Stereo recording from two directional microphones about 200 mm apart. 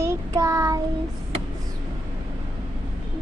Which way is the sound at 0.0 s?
15° right (ahead or behind).